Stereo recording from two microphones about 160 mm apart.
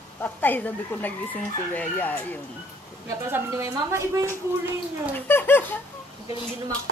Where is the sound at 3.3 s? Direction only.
15° right (ahead or behind).